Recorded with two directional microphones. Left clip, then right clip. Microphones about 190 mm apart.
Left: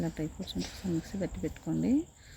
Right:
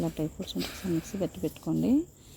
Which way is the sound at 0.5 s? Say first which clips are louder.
Right 3 dB; 45° right (ahead or behind).